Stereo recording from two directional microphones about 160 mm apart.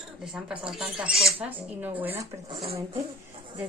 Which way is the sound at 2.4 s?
30° right (ahead or behind).